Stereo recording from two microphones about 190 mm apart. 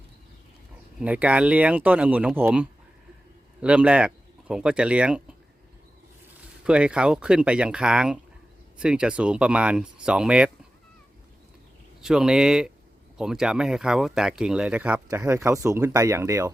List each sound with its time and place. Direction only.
0.9 s speech: 5° right (ahead or behind)
6.7 s speech: 5° right (ahead or behind)
12.0 s speech: 5° right (ahead or behind)